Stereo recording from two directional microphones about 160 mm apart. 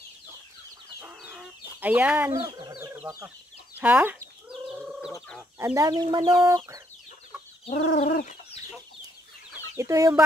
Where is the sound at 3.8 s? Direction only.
10° right (ahead or behind).